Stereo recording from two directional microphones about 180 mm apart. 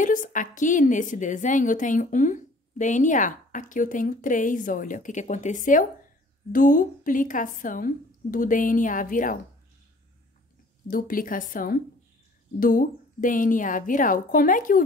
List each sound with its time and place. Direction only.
0.0 s a woman's voice: 45° left (ahead or behind)
10.9 s a woman's voice: 50° left (ahead or behind)